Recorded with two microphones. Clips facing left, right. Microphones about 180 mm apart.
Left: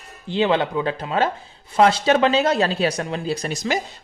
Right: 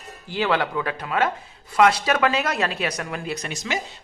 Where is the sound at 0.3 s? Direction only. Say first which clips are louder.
Left 4 dB; 20° left (ahead or behind).